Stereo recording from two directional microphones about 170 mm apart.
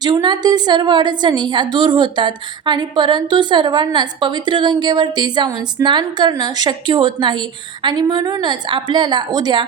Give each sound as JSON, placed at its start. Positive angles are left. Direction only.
{"t": 0.0, "sound": "a woman's voice", "side_deg": -25}